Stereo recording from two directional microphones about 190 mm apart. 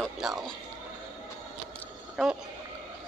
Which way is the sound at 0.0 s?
Centre (ahead or behind).